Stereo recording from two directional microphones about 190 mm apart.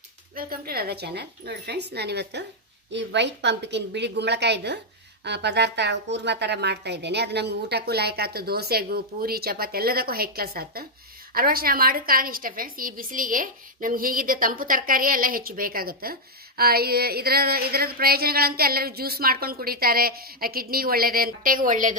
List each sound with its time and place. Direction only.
0.4 s a woman's voice: 50° right (ahead or behind)